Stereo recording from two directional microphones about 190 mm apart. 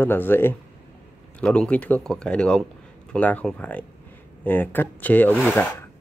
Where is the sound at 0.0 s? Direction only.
10° left (ahead or behind).